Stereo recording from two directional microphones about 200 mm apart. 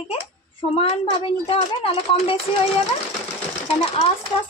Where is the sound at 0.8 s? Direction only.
30° left (ahead or behind).